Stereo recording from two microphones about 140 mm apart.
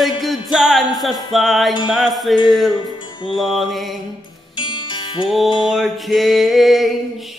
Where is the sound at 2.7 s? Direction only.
30° left (ahead or behind).